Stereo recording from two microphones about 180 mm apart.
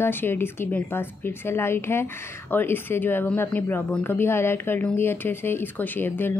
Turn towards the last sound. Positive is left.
turn(degrees=10)  # may be behind; listen again after turning